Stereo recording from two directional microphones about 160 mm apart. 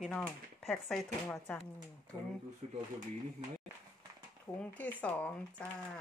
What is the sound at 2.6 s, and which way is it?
Speech, 40° right (ahead or behind).